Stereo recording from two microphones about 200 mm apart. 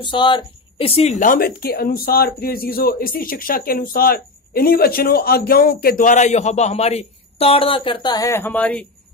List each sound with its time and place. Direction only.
0.0 s speech: 25° left (ahead or behind); by 8.8 s 5° left (ahead or behind)